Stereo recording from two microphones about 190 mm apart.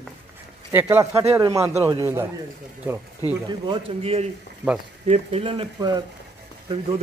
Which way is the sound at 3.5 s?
30° right (ahead or behind).